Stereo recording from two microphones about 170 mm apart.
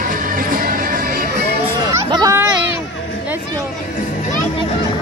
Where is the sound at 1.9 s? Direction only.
20° right (ahead or behind).